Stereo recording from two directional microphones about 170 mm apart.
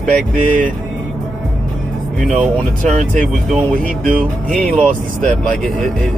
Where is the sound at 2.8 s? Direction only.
45° right (ahead or behind).